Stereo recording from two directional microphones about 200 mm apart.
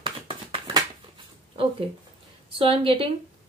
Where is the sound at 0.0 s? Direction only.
20° right (ahead or behind).